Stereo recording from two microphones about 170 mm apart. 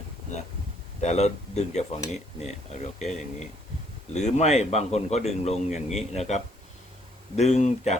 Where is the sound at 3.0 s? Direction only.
40° left (ahead or behind).